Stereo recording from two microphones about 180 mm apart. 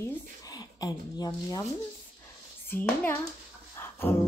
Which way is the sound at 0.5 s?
20° left (ahead or behind).